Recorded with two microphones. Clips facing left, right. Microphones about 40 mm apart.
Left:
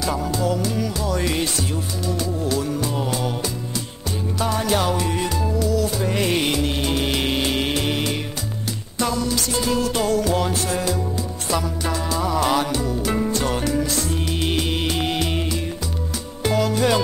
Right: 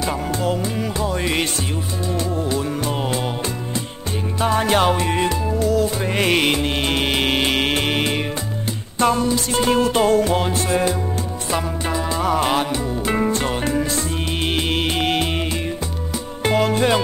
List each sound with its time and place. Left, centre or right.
0.3 s music: right
2.8 s music: right
4.4 s music: right
12.2 s music: right
16.4 s music: right